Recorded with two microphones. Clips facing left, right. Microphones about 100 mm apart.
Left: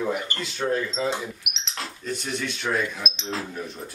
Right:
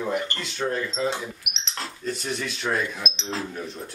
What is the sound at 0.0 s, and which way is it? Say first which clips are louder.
Speech: even; 5° left (ahead or behind).